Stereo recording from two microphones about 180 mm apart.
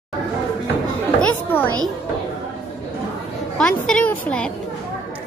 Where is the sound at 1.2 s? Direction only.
10° left (ahead or behind).